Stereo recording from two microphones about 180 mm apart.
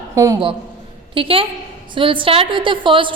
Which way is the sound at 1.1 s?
30° right (ahead or behind).